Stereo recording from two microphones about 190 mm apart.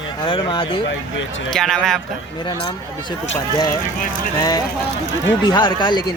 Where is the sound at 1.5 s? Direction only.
Centre (ahead or behind).